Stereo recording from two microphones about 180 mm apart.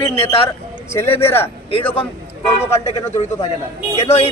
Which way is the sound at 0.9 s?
15° left (ahead or behind).